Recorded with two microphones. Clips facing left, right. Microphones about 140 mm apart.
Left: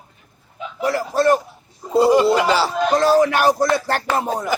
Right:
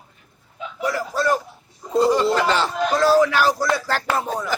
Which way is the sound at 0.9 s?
60° left (ahead or behind).